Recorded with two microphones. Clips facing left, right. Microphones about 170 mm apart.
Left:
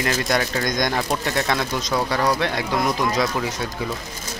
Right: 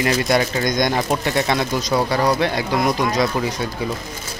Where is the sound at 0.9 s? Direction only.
20° right (ahead or behind).